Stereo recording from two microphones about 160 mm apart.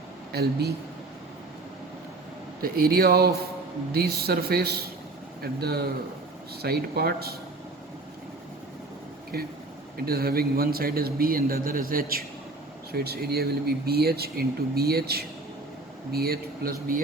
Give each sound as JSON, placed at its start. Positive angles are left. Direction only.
{"t": 0.3, "sound": "speech", "side_deg": -90}
{"t": 2.6, "sound": "speech", "side_deg": -70}
{"t": 9.3, "sound": "speech", "side_deg": -75}
{"t": 12.9, "sound": "speech", "side_deg": -75}